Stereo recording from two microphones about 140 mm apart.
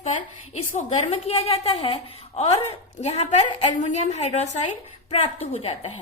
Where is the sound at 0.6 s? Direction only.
50° left (ahead or behind).